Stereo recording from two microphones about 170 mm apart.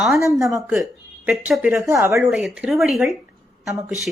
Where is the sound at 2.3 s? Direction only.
5° right (ahead or behind).